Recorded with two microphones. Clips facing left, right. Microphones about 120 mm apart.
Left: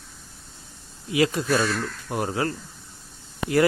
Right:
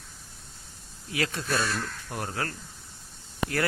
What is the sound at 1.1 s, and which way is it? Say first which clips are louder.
Speech: left 8 dB; 10° left (ahead or behind).